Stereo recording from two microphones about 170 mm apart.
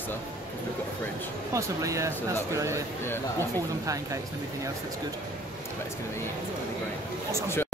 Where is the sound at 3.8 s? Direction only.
20° right (ahead or behind).